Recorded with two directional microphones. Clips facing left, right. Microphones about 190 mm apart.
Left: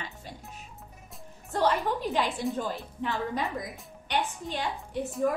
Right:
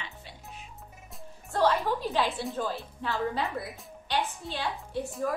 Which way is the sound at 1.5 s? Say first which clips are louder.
Right 1 dB; 15° left (ahead or behind).